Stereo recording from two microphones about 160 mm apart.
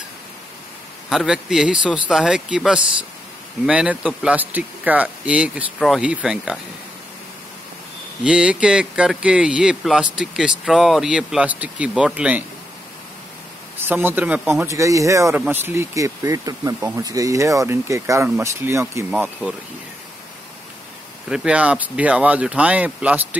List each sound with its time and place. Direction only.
1.1 s speech: 5° right (ahead or behind)
8.2 s speech: 5° right (ahead or behind)
13.7 s speech: 10° right (ahead or behind)
21.3 s speech: 5° right (ahead or behind)